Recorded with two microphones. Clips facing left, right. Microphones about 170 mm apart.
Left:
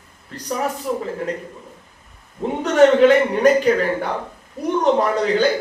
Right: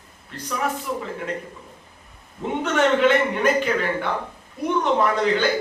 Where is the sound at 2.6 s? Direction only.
40° left (ahead or behind).